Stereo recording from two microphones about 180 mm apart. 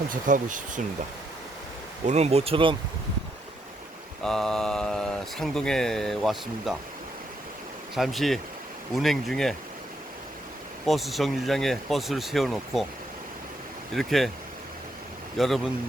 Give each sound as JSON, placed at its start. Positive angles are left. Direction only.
{"t": 0.1, "sound": "speech", "side_deg": -45}
{"t": 2.0, "sound": "speech", "side_deg": -35}
{"t": 4.2, "sound": "speech", "side_deg": 5}
{"t": 7.9, "sound": "speech", "side_deg": 0}
{"t": 10.8, "sound": "speech", "side_deg": 0}
{"t": 13.9, "sound": "speech", "side_deg": 0}
{"t": 15.4, "sound": "speech", "side_deg": 0}